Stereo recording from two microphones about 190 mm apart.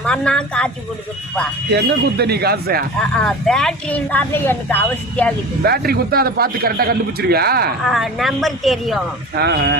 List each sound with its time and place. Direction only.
0.0 s speech: 5° left (ahead or behind)
1.7 s speech: 60° right (ahead or behind)
3.2 s speech: 5° left (ahead or behind)
5.6 s a man's voice: 55° right (ahead or behind)
7.9 s speech: centre (ahead or behind)
9.3 s speech: 60° right (ahead or behind)